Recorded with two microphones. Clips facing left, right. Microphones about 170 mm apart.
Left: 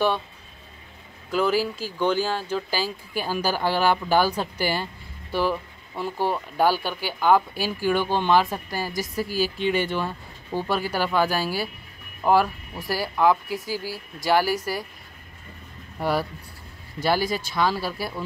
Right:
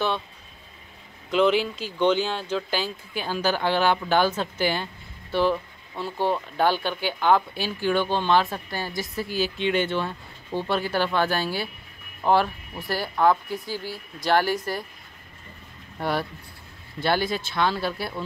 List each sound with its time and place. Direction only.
1.3 s speech: 5° left (ahead or behind)
8.9 s a woman's voice: 40° left (ahead or behind)
9.2 s speech: 10° left (ahead or behind)
16.0 s speech: 5° left (ahead or behind)